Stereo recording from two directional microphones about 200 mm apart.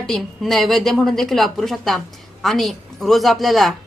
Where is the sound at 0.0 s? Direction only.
5° left (ahead or behind).